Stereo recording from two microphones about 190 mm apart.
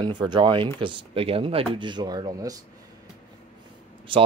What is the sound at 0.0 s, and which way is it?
Speech, 25° right (ahead or behind).